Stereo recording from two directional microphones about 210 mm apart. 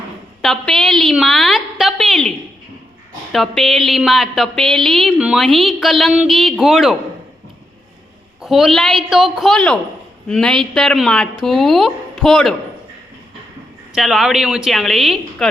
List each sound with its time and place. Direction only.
0.4 s a woman's voice: centre (ahead or behind)
3.3 s a woman's voice: centre (ahead or behind)
8.4 s a woman's voice: centre (ahead or behind)
13.9 s a woman's voice: centre (ahead or behind)